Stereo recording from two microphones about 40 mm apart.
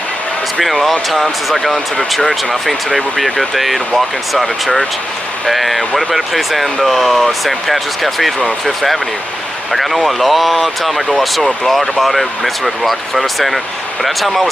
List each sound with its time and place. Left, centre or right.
0.6 s speech: centre